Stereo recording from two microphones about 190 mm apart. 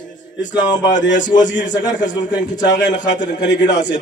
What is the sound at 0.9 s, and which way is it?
Speech, 70° left (ahead or behind).